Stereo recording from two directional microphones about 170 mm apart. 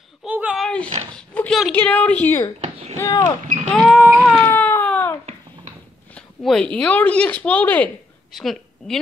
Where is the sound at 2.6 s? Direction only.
40° right (ahead or behind).